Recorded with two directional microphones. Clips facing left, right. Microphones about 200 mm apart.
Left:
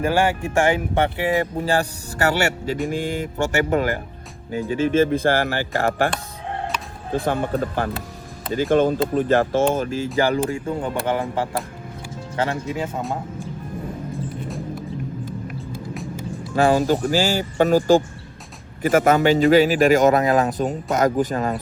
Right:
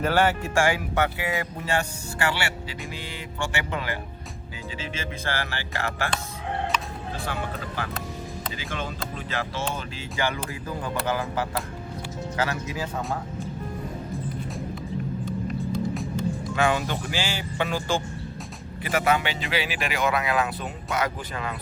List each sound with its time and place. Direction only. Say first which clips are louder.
0.0 s a man's voice: left 3 dB; 10° left (ahead or behind); by 6.1 s 45° left (ahead or behind)
7.3 s a man's voice: left 11 dB; 50° left (ahead or behind); by 12.9 s 25° left (ahead or behind)
16.6 s a man's voice: left 9 dB; 35° left (ahead or behind)